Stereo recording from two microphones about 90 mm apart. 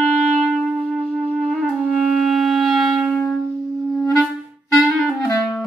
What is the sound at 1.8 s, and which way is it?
Clarinet, 5° right (ahead or behind).